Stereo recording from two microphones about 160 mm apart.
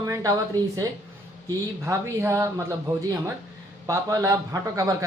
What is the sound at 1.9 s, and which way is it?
Speech, 20° right (ahead or behind).